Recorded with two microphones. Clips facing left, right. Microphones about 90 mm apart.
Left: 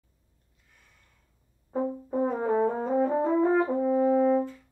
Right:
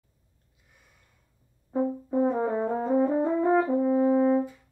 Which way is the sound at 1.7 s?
5° left (ahead or behind).